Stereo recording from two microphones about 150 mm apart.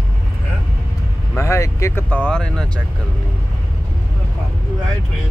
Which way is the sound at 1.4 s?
20° left (ahead or behind).